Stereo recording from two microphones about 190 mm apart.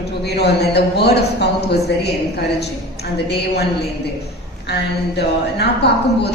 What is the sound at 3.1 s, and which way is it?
Speech, 60° left (ahead or behind).